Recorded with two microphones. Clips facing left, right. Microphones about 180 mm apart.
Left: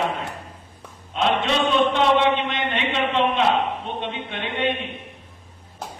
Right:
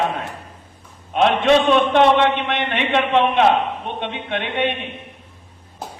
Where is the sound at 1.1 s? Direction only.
60° right (ahead or behind).